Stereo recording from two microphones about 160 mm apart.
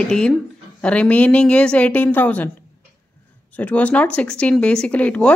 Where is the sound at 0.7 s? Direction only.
5° left (ahead or behind).